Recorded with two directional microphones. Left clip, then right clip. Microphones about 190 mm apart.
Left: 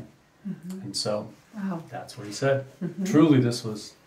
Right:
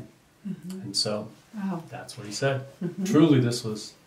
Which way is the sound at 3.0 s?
15° right (ahead or behind).